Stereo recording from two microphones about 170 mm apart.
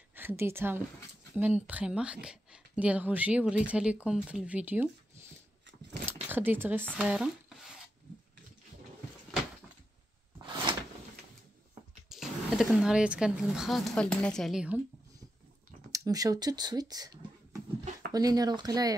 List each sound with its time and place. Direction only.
0.1 s a woman's voice: 10° right (ahead or behind)
6.2 s speech: 10° right (ahead or behind)
10.4 s a sound: 30° right (ahead or behind)
12.1 s speech: 5° right (ahead or behind)
15.9 s speech: 20° right (ahead or behind)